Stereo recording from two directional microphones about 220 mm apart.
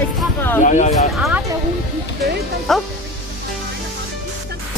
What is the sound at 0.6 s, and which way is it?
Speech, 35° left (ahead or behind).